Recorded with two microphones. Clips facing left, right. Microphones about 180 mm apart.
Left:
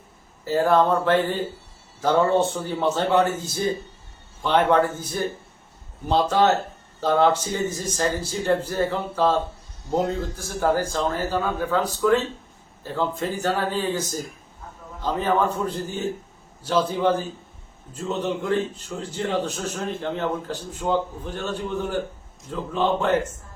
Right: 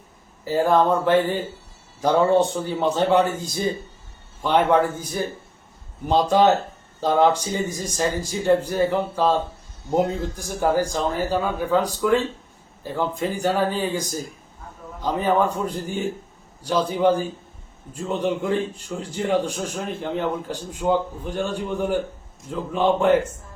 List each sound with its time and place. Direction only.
0.4 s a man's voice: 15° right (ahead or behind)